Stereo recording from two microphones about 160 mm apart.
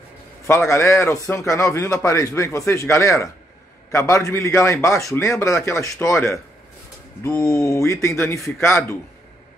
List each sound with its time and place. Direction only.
0.5 s a man's voice: 15° left (ahead or behind)